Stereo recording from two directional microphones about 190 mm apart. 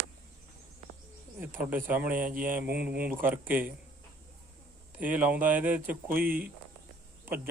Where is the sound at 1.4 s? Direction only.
10° right (ahead or behind).